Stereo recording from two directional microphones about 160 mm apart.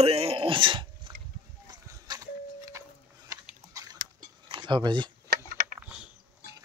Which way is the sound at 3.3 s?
20° right (ahead or behind).